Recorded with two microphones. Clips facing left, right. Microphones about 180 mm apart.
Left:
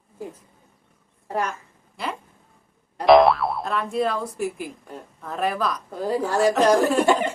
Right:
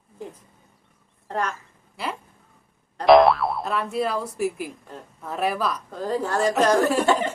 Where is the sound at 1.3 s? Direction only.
10° left (ahead or behind).